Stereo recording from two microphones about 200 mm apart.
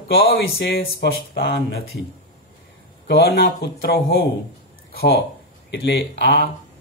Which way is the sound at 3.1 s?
55° left (ahead or behind).